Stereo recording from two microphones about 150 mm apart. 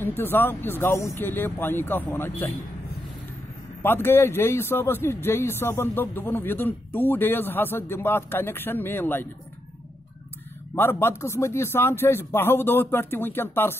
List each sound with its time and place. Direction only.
0.0 s a man's voice: 15° left (ahead or behind)
3.8 s a man's voice: 15° left (ahead or behind)
10.7 s a man's voice: 15° left (ahead or behind)